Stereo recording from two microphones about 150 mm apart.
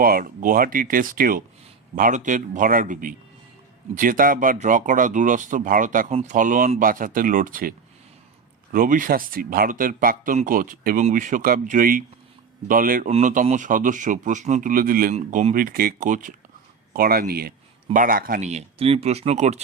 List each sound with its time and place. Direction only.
0.0 s speech: 75° right (ahead or behind)
2.0 s speech: 60° right (ahead or behind)
6.1 s speech: 50° right (ahead or behind); by 13.1 s 70° right (ahead or behind)
13.1 s speech: 45° right (ahead or behind); by 15.1 s 75° right (ahead or behind)
15.1 s speech: 50° right (ahead or behind)
16.9 s speech: 85° right
17.9 s speech: 65° right (ahead or behind)
18.4 s speech: 45° right (ahead or behind)